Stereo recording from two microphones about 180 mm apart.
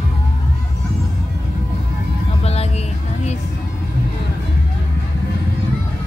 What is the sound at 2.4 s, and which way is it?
Music, 35° left (ahead or behind).